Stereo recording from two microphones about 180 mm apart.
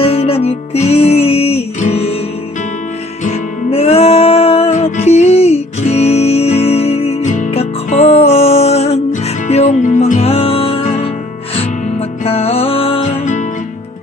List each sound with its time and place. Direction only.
0.0 s music: 35° left (ahead or behind)
3.3 s music: 35° left (ahead or behind)
12.3 s music: 35° left (ahead or behind)